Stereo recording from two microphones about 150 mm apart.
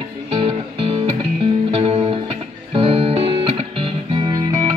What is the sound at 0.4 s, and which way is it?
Music, 35° right (ahead or behind).